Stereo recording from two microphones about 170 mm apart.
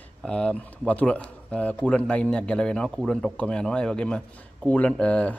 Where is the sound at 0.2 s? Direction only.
5° left (ahead or behind).